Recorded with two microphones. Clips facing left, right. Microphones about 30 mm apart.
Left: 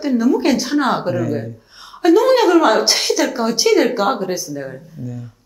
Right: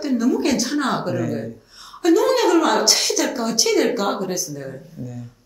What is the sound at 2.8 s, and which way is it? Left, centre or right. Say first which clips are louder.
A woman's voice: left 3 dB; centre.